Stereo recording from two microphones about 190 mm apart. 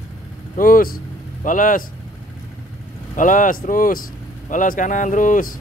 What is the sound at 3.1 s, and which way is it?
Speech, 45° left (ahead or behind).